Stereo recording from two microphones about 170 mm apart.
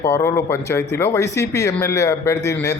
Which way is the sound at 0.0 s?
15° left (ahead or behind).